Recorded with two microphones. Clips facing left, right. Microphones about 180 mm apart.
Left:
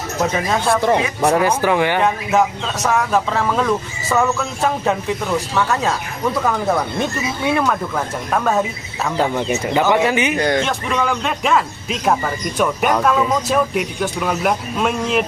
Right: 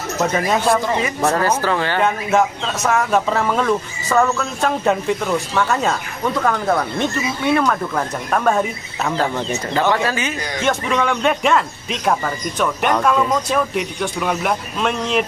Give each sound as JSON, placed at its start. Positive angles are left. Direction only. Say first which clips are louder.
{"t": 0.2, "sound": "speech", "louder": "right 1 dB", "side_deg": 0}
{"t": 1.2, "sound": "speech", "louder": "left 1 dB", "side_deg": 15}
{"t": 2.0, "sound": "speech", "louder": "even", "side_deg": 0}
{"t": 9.1, "sound": "speech", "louder": "left 3 dB", "side_deg": 15}
{"t": 10.3, "sound": "speech", "louder": "left 9 dB", "side_deg": 60}
{"t": 10.6, "sound": "speech", "louder": "right 1 dB", "side_deg": 0}